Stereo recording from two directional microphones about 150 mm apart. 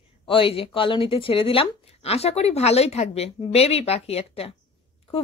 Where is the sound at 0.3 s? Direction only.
35° left (ahead or behind).